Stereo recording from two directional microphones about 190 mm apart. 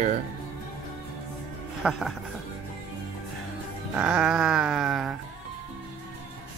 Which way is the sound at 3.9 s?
5° right (ahead or behind).